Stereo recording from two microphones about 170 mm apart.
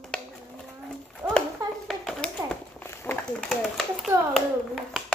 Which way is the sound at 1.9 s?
5° left (ahead or behind).